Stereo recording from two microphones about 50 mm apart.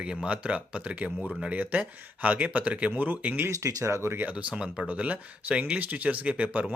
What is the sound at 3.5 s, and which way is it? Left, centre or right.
Speech, right.